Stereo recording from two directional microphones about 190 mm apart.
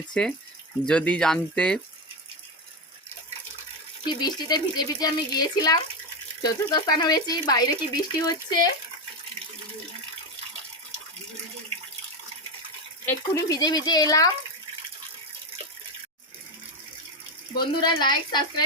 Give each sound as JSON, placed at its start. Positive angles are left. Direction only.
{"t": 0.1, "sound": "speech", "side_deg": 5}
{"t": 4.0, "sound": "speech", "side_deg": 20}
{"t": 13.1, "sound": "speech", "side_deg": 15}
{"t": 17.5, "sound": "speech", "side_deg": 20}